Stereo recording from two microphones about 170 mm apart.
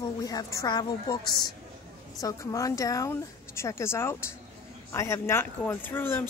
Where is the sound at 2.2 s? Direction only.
20° left (ahead or behind).